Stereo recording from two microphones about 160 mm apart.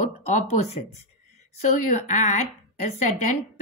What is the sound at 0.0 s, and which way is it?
Speech, 50° left (ahead or behind).